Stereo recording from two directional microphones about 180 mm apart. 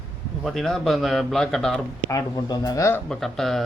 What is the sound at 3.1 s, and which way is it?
Speech, centre (ahead or behind).